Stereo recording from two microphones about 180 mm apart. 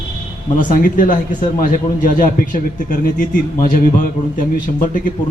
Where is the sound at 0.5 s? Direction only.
50° left (ahead or behind).